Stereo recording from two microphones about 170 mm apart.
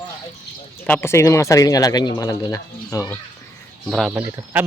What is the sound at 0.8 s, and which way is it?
Speech, 10° left (ahead or behind).